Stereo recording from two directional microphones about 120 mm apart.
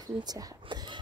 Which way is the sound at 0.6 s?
40° right (ahead or behind).